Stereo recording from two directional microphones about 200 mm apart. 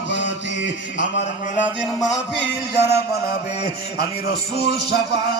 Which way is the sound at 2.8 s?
55° left (ahead or behind).